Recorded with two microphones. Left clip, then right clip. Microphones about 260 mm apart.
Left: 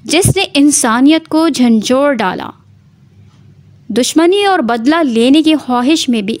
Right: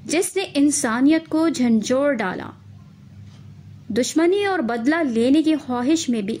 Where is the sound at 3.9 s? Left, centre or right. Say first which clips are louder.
Left 8 dB; left.